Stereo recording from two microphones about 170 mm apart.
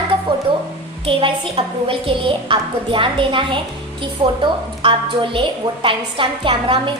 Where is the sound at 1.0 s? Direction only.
30° right (ahead or behind).